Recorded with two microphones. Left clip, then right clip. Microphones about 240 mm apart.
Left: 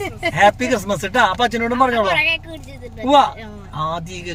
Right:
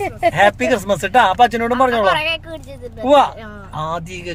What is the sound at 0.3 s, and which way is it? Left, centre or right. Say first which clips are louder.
Speech: left 1 dB; centre.